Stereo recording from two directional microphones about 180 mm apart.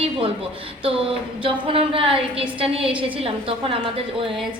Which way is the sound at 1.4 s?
30° right (ahead or behind).